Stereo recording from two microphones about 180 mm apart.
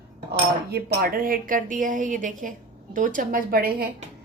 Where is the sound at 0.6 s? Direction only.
60° right (ahead or behind).